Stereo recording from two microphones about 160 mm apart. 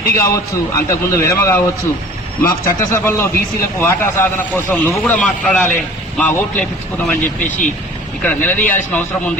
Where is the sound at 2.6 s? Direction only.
15° left (ahead or behind).